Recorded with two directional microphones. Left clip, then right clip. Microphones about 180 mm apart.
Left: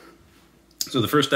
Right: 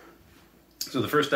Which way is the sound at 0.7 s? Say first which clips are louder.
Left 4 dB; 60° left (ahead or behind).